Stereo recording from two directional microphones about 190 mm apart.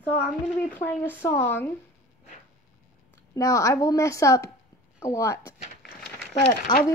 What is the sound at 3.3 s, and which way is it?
A woman's voice, 20° left (ahead or behind).